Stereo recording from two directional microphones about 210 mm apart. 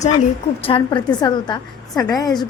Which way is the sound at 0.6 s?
25° left (ahead or behind).